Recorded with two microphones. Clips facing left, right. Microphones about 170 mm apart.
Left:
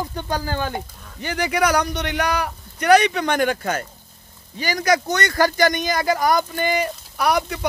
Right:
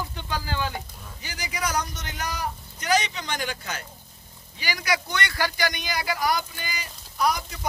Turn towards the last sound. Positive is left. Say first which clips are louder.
# left 5 dB
turn(degrees=70)  # may be behind; listen again after turning